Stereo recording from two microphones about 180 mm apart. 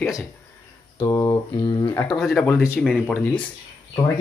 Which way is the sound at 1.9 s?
10° left (ahead or behind).